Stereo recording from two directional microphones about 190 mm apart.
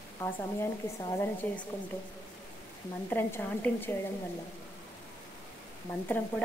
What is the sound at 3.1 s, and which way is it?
Speech, 10° left (ahead or behind).